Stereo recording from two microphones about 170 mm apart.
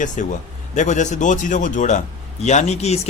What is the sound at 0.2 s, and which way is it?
A man's voice, 45° left (ahead or behind).